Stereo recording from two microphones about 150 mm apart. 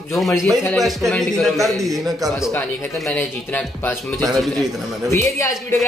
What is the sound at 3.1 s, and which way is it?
Speech, 10° left (ahead or behind).